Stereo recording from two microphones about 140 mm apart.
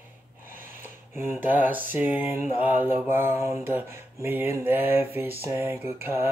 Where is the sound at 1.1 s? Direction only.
15° right (ahead or behind).